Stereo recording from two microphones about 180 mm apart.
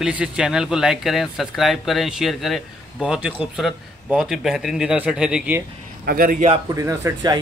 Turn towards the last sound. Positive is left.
turn(degrees=-20)  # may be behind; listen again after turning